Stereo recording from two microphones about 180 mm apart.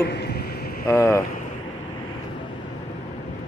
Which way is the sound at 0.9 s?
15° left (ahead or behind).